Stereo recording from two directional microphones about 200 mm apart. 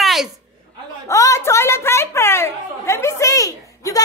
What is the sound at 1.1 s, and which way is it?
A woman's voice, 15° left (ahead or behind).